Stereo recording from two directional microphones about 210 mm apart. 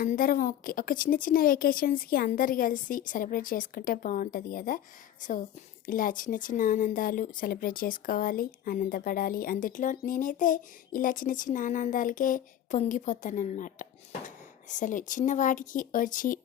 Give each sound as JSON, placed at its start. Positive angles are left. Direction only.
{"t": 0.0, "sound": "speech", "side_deg": 40}